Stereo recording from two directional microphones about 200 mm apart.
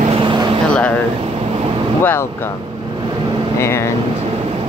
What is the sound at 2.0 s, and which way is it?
Speech, 10° left (ahead or behind).